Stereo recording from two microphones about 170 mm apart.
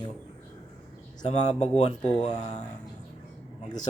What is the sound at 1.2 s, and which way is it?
Speech, 40° left (ahead or behind).